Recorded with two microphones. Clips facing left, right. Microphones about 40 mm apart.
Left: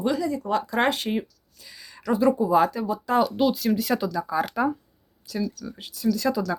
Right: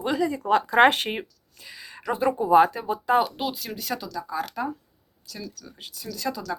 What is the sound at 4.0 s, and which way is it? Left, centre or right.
Speech, centre.